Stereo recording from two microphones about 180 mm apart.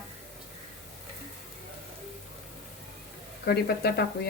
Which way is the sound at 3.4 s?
60° left (ahead or behind).